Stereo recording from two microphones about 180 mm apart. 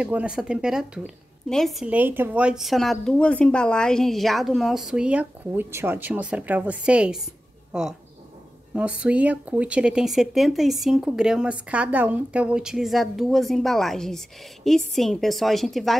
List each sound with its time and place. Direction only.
0.0 s a woman's voice: 5° right (ahead or behind)
8.7 s a woman's voice: 5° right (ahead or behind)